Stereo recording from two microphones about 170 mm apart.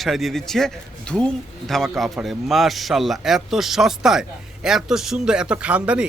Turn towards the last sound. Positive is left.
turn(degrees=-5)  # may be behind; listen again after turning